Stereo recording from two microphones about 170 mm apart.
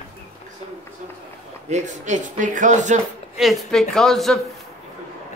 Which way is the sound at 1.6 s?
45° right (ahead or behind).